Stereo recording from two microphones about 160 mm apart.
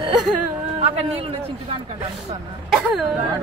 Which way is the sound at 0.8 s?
40° right (ahead or behind).